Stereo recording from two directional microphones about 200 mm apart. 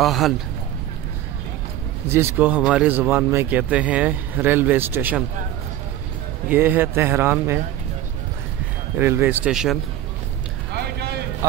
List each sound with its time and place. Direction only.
0.0 s a man's voice: centre (ahead or behind)
2.1 s speech: 10° right (ahead or behind)
6.5 s speech: 10° right (ahead or behind)
8.9 s speech: 10° right (ahead or behind)
10.7 s a sound: 55° right (ahead or behind)